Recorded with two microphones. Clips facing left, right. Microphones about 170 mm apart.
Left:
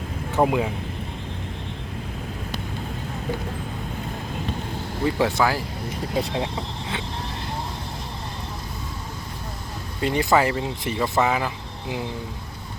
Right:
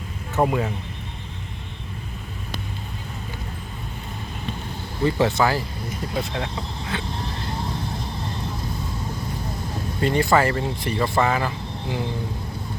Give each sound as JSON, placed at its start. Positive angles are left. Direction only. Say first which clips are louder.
{"t": 0.3, "sound": "speech", "louder": "left 1 dB", "side_deg": 10}
{"t": 5.1, "sound": "speech", "louder": "right 1 dB", "side_deg": 10}
{"t": 10.0, "sound": "speech", "louder": "right 1 dB", "side_deg": 15}